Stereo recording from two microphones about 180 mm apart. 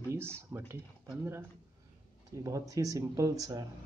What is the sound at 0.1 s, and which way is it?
Speech, 15° right (ahead or behind).